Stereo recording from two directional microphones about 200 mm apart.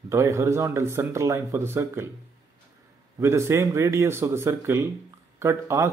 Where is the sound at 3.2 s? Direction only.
15° right (ahead or behind).